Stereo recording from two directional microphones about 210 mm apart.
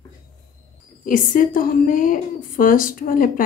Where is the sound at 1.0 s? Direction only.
40° left (ahead or behind).